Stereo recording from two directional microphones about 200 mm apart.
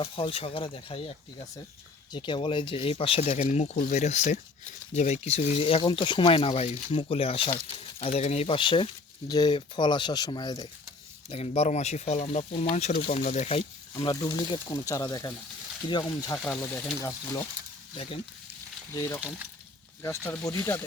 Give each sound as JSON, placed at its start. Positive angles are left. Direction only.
{"t": 0.0, "sound": "speech", "side_deg": 25}
{"t": 11.3, "sound": "speech", "side_deg": 30}
{"t": 13.9, "sound": "speech", "side_deg": 20}
{"t": 17.9, "sound": "speech", "side_deg": 25}
{"t": 18.9, "sound": "speech", "side_deg": 15}